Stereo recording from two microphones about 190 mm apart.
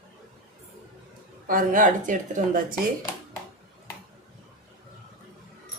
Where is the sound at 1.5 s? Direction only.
45° right (ahead or behind).